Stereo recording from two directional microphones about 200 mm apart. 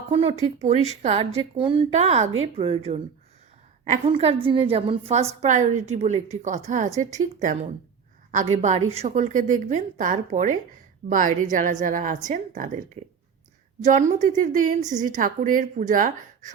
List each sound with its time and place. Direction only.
0.1 s a woman's voice: 30° right (ahead or behind)
13.8 s a woman's voice: 35° right (ahead or behind)